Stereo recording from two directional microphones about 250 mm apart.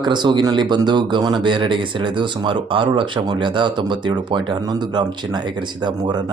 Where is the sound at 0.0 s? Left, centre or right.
Centre.